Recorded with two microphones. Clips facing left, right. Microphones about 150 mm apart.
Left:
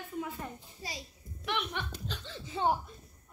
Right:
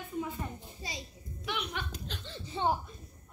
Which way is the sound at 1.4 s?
Centre (ahead or behind).